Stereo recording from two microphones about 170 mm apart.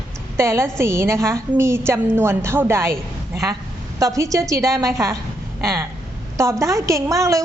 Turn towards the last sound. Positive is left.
turn(degrees=-20)  # may be behind; listen again after turning